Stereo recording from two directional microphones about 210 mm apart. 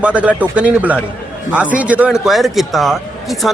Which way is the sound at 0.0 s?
5° right (ahead or behind).